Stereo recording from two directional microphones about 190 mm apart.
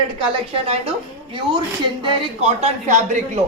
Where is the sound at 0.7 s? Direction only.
30° right (ahead or behind).